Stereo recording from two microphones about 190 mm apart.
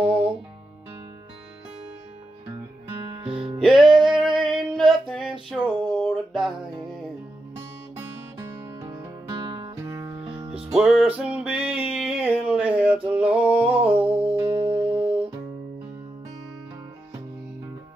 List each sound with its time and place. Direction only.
3.1 s music: 25° right (ahead or behind)
3.6 s music: centre (ahead or behind)
5.6 s a sound: centre (ahead or behind)
8.4 s music: 20° right (ahead or behind)
10.7 s music: centre (ahead or behind)
14.0 s music: 30° right (ahead or behind)